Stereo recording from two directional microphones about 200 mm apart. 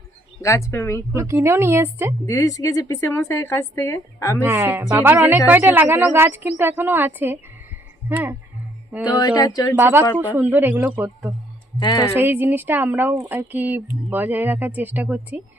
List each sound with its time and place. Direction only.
0.4 s speech: 15° left (ahead or behind)
1.1 s speech: 15° right (ahead or behind)
2.2 s speech: 15° left (ahead or behind)
4.4 s speech: 10° right (ahead or behind)
9.1 s speech: 20° left (ahead or behind)
9.7 s speech: 10° right (ahead or behind)
11.8 s speech: 20° left (ahead or behind)
12.2 s speech: 10° right (ahead or behind)